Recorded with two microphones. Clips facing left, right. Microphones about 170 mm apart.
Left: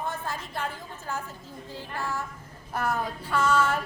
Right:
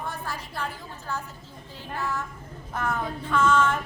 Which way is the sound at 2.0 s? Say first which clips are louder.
Right 2 dB; 10° left (ahead or behind).